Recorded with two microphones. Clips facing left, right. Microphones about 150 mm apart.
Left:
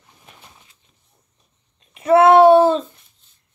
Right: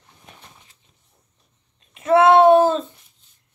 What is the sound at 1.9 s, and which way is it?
Babbling, centre (ahead or behind).